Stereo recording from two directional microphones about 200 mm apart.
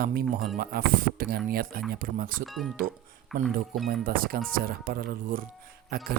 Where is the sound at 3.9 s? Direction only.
45° right (ahead or behind).